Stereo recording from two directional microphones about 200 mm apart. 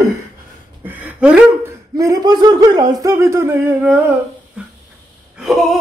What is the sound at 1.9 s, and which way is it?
Speech, 15° right (ahead or behind).